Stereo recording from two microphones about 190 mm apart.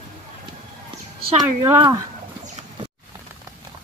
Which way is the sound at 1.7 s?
20° right (ahead or behind).